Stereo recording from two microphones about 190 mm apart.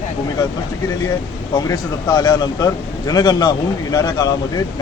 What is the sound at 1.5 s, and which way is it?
A man's voice, 20° left (ahead or behind).